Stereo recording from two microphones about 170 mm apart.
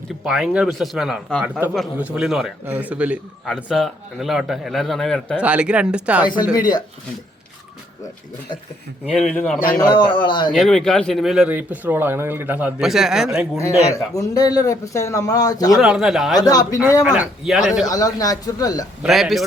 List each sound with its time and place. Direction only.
0.3 s a man's voice: 5° right (ahead or behind)
6.6 s speech: 25° left (ahead or behind)
9.1 s a man's voice: 5° left (ahead or behind)
9.7 s speech: 25° left (ahead or behind)
10.5 s speech: 5° left (ahead or behind)
13.9 s speech: 20° left (ahead or behind)
15.8 s speech: 5° right (ahead or behind)
16.4 s speech: 20° left (ahead or behind)
17.2 s speech: centre (ahead or behind)
17.8 s speech: 20° left (ahead or behind)
19.0 s speech: centre (ahead or behind)